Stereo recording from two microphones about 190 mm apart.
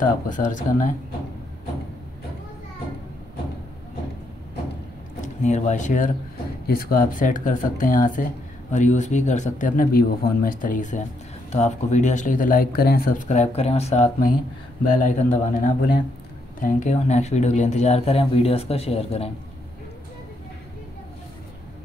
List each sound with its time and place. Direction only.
0.3 s speech: 40° left (ahead or behind)
5.2 s speech: 40° left (ahead or behind)
6.7 s speech: 50° left (ahead or behind)
13.3 s speech: 35° left (ahead or behind)
14.9 s speech: 45° left (ahead or behind)